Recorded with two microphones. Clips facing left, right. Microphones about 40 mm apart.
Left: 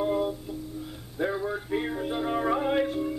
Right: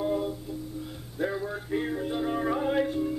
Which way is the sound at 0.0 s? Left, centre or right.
Left.